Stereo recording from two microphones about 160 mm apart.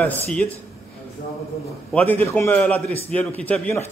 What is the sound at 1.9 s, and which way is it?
A man's voice, 10° left (ahead or behind).